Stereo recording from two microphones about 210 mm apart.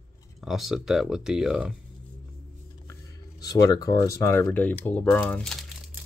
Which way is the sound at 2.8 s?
15° left (ahead or behind).